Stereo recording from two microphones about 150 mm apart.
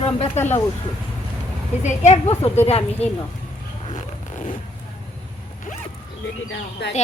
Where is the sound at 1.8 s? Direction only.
50° left (ahead or behind).